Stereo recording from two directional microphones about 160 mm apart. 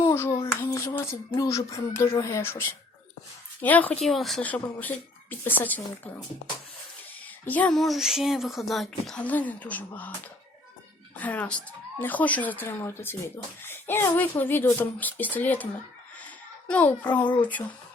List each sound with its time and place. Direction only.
0.0 s child singing: 15° left (ahead or behind)
0.4 s speech: 20° left (ahead or behind)
7.4 s speech: 10° left (ahead or behind)
11.2 s speech: 10° left (ahead or behind)
16.2 s a sound: 10° left (ahead or behind)